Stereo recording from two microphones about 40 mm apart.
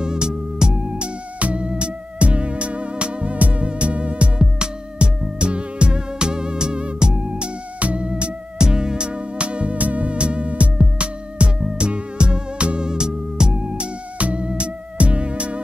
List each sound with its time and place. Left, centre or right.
0.0 s music: centre
14.1 s music: right